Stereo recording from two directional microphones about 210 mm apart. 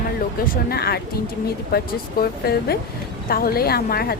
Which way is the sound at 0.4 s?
45° left (ahead or behind).